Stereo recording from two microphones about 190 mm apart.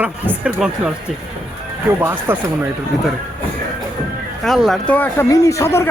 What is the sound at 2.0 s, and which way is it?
Speech, 10° right (ahead or behind).